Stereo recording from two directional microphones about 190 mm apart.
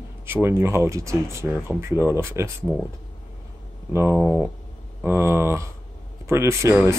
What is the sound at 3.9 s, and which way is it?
Speech, 10° right (ahead or behind).